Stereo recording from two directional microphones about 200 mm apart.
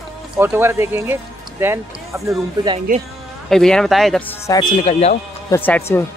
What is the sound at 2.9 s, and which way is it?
Speech, 45° right (ahead or behind).